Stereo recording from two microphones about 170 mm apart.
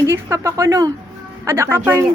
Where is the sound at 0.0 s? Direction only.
15° right (ahead or behind).